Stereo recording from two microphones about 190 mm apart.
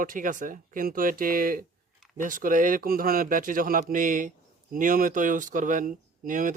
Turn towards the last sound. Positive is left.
turn(degrees=-45)  # may be behind; listen again after turning